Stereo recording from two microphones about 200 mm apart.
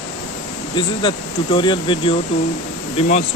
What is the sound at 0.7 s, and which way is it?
Speech, 25° left (ahead or behind).